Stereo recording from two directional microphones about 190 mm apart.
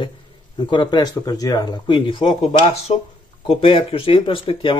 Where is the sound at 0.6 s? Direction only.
25° left (ahead or behind).